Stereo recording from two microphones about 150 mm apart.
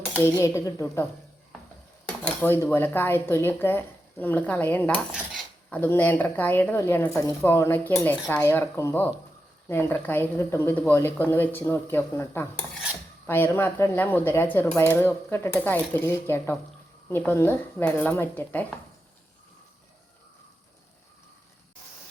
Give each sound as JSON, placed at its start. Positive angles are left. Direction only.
{"t": 0.2, "sound": "speech", "side_deg": 20}
{"t": 2.0, "sound": "speech", "side_deg": 10}
{"t": 5.1, "sound": "cutlery", "side_deg": -5}
{"t": 5.7, "sound": "speech", "side_deg": 10}